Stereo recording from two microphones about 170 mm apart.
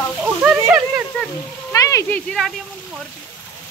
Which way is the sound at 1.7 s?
20° left (ahead or behind).